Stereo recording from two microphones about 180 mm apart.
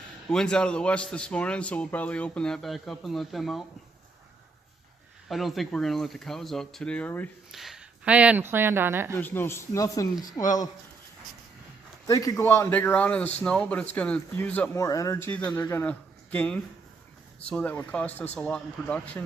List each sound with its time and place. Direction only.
0.3 s speech: 5° left (ahead or behind)
5.3 s speech: centre (ahead or behind)
7.5 s speech: centre (ahead or behind)
9.1 s a man's voice: 10° left (ahead or behind)
10.4 s speech: 30° left (ahead or behind)
12.0 s a man's voice: 20° left (ahead or behind)